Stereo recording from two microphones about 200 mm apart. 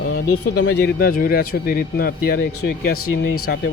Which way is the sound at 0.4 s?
60° left (ahead or behind).